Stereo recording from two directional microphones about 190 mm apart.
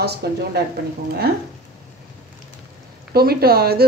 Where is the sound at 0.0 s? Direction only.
60° right (ahead or behind).